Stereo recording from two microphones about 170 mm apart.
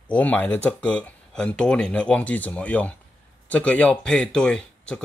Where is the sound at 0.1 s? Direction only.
10° left (ahead or behind).